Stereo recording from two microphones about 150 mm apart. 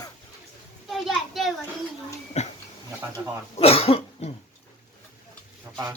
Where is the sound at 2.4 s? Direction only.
45° left (ahead or behind).